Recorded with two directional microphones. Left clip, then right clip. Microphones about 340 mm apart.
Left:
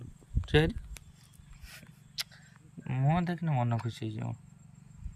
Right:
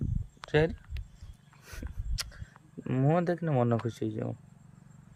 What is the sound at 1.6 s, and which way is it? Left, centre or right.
Dog, centre.